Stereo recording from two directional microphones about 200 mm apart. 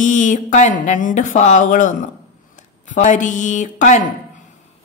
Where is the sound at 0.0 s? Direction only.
40° left (ahead or behind).